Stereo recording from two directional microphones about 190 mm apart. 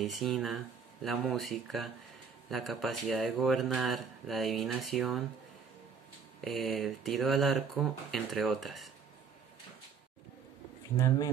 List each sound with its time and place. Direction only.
0.0 s speech: centre (ahead or behind)
6.4 s speech: centre (ahead or behind)
11.0 s speech: 15° left (ahead or behind)